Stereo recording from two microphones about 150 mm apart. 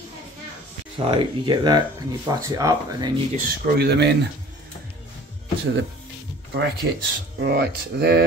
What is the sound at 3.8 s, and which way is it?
Speech, 90° right.